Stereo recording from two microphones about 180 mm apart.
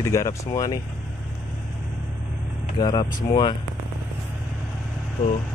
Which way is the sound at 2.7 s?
25° left (ahead or behind).